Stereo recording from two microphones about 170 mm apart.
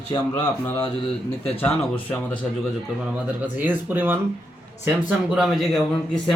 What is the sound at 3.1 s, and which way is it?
A man's voice, 10° right (ahead or behind).